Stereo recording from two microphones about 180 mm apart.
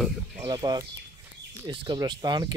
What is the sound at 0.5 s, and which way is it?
Speech, 20° right (ahead or behind).